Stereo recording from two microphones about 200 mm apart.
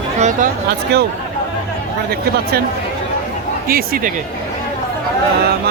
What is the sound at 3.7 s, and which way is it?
Speech, 45° right (ahead or behind).